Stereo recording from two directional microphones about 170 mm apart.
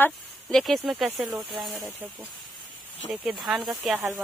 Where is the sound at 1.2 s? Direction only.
25° right (ahead or behind).